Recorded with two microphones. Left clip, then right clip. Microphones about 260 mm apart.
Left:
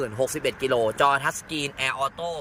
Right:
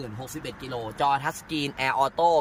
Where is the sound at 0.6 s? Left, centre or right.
Left.